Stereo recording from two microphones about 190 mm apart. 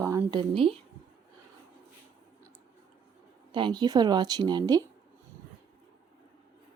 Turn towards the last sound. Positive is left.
turn(degrees=-20)  # may be behind; listen again after turning